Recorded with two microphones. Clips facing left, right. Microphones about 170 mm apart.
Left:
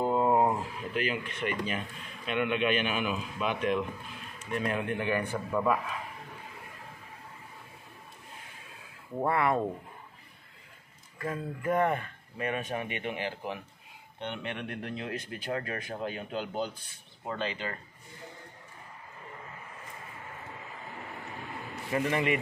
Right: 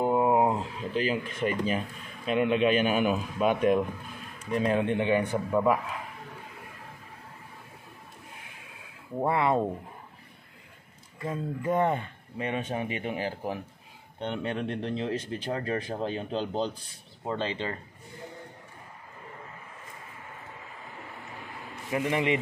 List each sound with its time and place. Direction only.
0.0 s a sound: 15° right (ahead or behind)
0.6 s speech: 35° right (ahead or behind)
4.5 s speech: 30° right (ahead or behind)
9.2 s speech: 20° right (ahead or behind)
11.1 s speech: 20° right (ahead or behind)
21.9 s speech: 15° right (ahead or behind)